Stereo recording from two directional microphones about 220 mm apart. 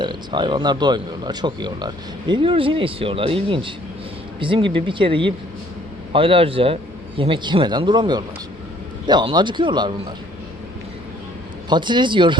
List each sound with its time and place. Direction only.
0.0 s speech: 20° right (ahead or behind)
11.7 s speech: 20° right (ahead or behind)